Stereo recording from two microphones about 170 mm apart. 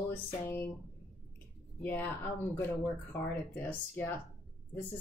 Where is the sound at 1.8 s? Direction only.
10° left (ahead or behind).